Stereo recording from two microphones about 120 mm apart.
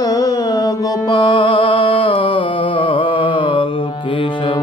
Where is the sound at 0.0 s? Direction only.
30° left (ahead or behind).